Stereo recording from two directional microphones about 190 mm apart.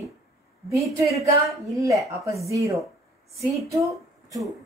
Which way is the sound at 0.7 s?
Centre (ahead or behind).